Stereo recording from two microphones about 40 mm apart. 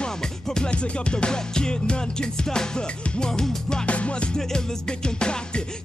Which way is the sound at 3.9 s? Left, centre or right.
Left.